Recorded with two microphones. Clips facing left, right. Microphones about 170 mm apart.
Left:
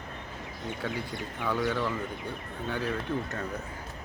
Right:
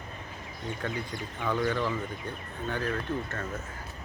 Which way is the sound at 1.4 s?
10° left (ahead or behind).